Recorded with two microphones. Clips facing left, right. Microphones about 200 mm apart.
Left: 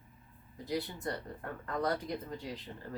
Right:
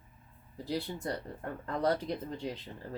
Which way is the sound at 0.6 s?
30° right (ahead or behind).